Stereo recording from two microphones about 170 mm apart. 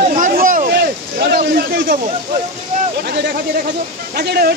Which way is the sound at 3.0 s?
80° right.